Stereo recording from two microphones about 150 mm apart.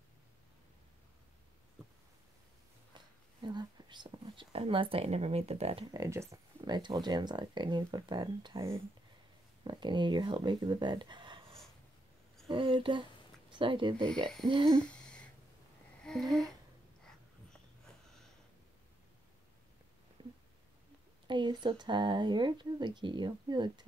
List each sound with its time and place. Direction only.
3.4 s speech: 30° right (ahead or behind)
5.9 s speech: 20° right (ahead or behind)
12.4 s speech: 35° right (ahead or behind)
14.7 s a sound: 5° left (ahead or behind)
20.2 s a sound: 30° right (ahead or behind)
21.3 s speech: 30° right (ahead or behind)